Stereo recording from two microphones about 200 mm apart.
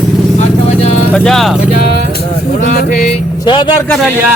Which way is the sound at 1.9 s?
50° left (ahead or behind).